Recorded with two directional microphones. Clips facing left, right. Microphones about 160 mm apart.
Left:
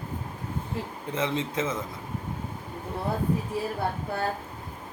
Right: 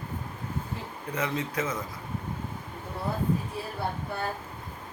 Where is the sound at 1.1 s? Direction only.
25° left (ahead or behind).